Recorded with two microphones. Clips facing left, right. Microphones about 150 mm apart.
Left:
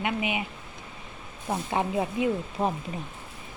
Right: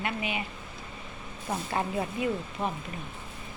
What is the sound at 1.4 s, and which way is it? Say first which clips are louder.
Speech: left 3 dB; 20° left (ahead or behind).